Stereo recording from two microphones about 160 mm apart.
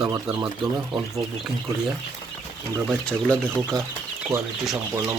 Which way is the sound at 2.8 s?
5° left (ahead or behind).